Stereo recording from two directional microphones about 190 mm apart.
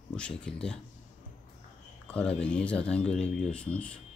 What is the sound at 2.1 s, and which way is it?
Speech, 5° left (ahead or behind).